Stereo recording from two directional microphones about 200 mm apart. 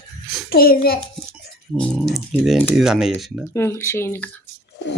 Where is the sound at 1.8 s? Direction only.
Centre (ahead or behind).